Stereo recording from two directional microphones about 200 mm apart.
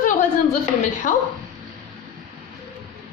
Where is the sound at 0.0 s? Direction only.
40° left (ahead or behind).